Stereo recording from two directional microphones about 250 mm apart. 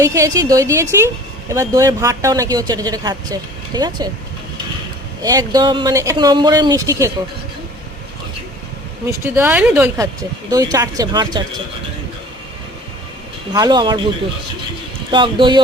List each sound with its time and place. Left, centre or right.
0.0 s speech: centre
5.2 s speech: centre
9.0 s speech: centre
13.5 s speech: centre
15.1 s speech: centre